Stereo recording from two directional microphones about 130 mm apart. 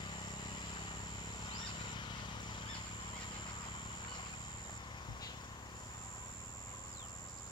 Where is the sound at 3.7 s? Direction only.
35° left (ahead or behind).